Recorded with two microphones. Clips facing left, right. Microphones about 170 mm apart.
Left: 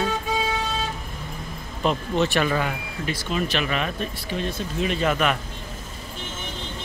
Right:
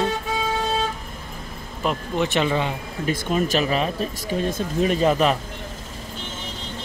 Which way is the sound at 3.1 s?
45° right (ahead or behind).